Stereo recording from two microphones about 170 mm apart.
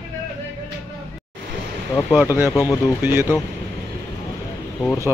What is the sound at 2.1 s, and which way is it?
A man's voice, 10° right (ahead or behind).